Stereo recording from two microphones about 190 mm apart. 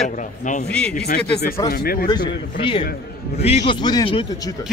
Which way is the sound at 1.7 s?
50° left (ahead or behind).